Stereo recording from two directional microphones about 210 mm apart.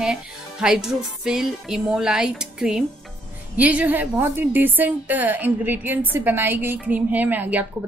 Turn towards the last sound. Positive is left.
turn(degrees=-10)  # may be behind; listen again after turning